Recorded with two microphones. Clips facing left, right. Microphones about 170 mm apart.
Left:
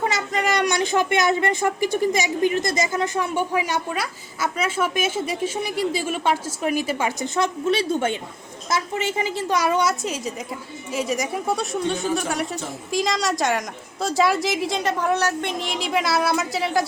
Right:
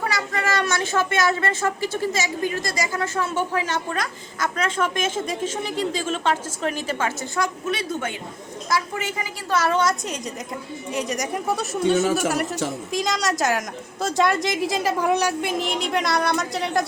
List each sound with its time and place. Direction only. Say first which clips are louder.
0.0 s speech: left 2 dB; 20° left (ahead or behind)
7.3 s a woman's voice: left 6 dB; 25° left (ahead or behind); by 16.8 s centre (ahead or behind)